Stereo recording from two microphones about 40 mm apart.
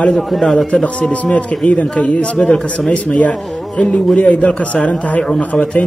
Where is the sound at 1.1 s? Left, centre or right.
Left.